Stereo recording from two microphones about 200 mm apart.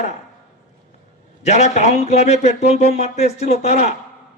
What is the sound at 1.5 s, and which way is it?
Speech, 35° left (ahead or behind).